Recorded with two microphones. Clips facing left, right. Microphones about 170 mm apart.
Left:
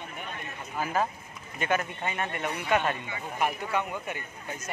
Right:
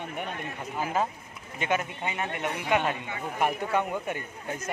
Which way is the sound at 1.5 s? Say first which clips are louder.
Even; 20° right (ahead or behind).